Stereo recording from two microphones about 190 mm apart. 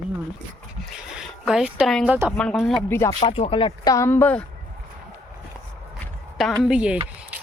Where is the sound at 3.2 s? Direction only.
30° left (ahead or behind); by 4.4 s 10° left (ahead or behind).